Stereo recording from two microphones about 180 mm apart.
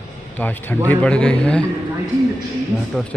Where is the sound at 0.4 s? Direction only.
10° left (ahead or behind).